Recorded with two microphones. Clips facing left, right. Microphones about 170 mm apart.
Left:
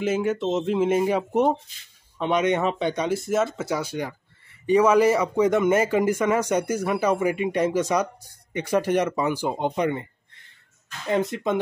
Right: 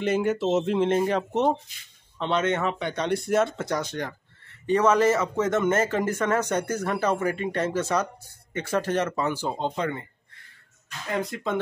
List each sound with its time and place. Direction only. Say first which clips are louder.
0.0 s speech: even; centre (ahead or behind)
3.1 s speech: even; centre (ahead or behind); by 10.0 s 20° left (ahead or behind)
11.1 s speech: left 5 dB; 20° left (ahead or behind)